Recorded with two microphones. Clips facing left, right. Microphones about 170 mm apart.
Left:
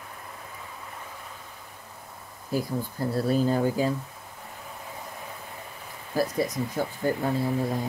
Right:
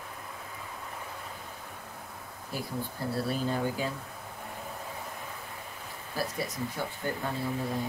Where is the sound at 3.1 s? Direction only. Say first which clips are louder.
Left 7 dB; 40° left (ahead or behind).